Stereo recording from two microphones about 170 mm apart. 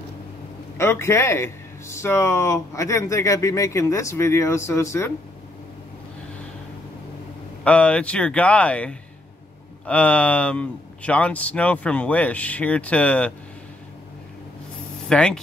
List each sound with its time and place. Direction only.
0.7 s a man's voice: 15° left (ahead or behind)
7.6 s a man's voice: 5° left (ahead or behind)
15.0 s speech: 5° left (ahead or behind)